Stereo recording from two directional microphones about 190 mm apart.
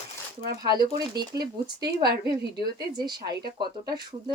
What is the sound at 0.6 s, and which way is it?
Speech, 20° right (ahead or behind).